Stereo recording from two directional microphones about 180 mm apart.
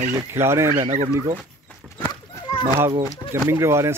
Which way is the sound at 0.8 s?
40° right (ahead or behind).